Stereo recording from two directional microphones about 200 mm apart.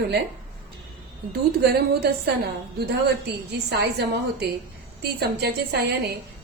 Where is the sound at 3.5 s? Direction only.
55° right (ahead or behind).